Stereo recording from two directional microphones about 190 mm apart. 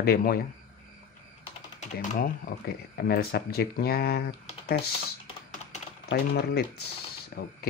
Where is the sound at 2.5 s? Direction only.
60° left (ahead or behind).